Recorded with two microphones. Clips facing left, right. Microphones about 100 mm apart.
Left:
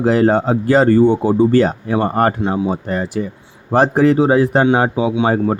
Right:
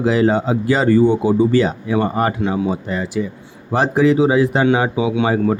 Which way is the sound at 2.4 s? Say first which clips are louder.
Left 1 dB; 30° left (ahead or behind).